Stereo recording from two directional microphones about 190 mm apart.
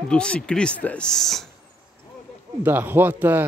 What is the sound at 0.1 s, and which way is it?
Speech, 5° left (ahead or behind).